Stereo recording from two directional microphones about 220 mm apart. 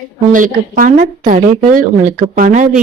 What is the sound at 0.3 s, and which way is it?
A woman's voice, 35° right (ahead or behind).